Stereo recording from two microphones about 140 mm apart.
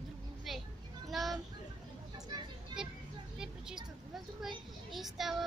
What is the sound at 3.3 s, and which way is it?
Speech, 5° right (ahead or behind).